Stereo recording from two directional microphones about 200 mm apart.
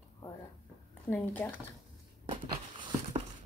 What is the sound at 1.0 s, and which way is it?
Speech, 10° left (ahead or behind).